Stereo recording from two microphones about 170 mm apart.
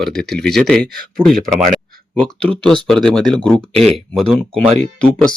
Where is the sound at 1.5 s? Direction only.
50° right (ahead or behind).